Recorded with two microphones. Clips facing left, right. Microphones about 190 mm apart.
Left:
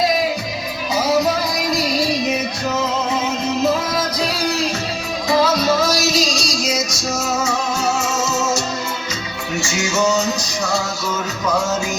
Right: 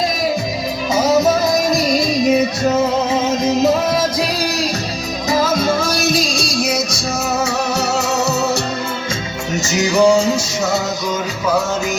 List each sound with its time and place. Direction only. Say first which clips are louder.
1.5 s music: right 4 dB; 45° right (ahead or behind)
5.3 s music: even; 50° right (ahead or behind)
9.6 s music: right 7 dB; 35° right (ahead or behind)